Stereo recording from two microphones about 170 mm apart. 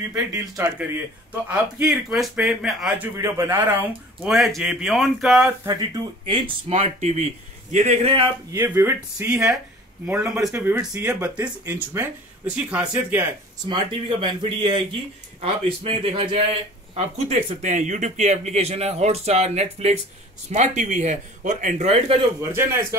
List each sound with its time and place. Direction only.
0.1 s a man's voice: 20° right (ahead or behind)
3.2 s speech: 15° right (ahead or behind); by 5.5 s centre (ahead or behind)
6.2 s speech: 30° right (ahead or behind)
8.5 s a man's voice: 15° right (ahead or behind)
9.3 s a man's voice: 5° right (ahead or behind)
14.2 s a man's voice: 30° right (ahead or behind)
22.4 s a man's voice: 15° right (ahead or behind)